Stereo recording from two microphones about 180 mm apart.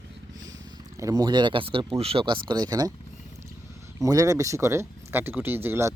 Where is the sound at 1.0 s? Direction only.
20° right (ahead or behind).